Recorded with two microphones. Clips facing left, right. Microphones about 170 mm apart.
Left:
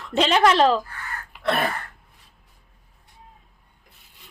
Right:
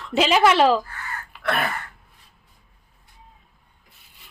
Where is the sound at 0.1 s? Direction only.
5° right (ahead or behind).